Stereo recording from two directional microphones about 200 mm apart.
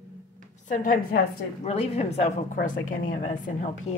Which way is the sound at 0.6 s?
40° left (ahead or behind).